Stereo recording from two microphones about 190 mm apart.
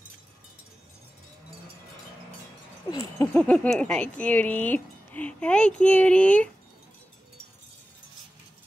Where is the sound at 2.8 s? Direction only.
20° left (ahead or behind).